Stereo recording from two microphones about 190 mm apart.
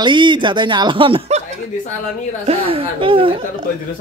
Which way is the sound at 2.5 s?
30° right (ahead or behind).